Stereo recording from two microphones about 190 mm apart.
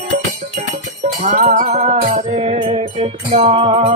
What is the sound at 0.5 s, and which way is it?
Jingle bell, 35° right (ahead or behind).